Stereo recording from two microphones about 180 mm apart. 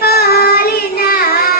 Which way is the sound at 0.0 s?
60° left (ahead or behind).